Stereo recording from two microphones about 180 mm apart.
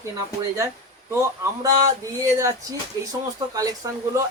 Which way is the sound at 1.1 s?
20° right (ahead or behind).